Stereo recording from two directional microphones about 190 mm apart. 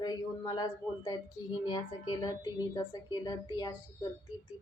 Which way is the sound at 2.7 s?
20° left (ahead or behind).